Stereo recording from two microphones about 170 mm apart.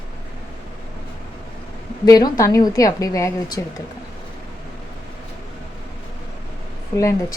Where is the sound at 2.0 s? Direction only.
20° left (ahead or behind).